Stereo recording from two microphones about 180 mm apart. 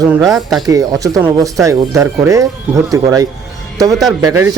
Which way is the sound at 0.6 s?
20° right (ahead or behind).